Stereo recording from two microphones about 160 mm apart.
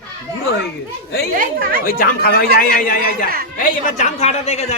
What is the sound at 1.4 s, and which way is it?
Speech, 65° right (ahead or behind).